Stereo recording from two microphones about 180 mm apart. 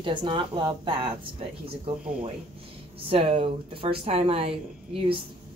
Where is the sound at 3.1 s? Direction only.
30° right (ahead or behind).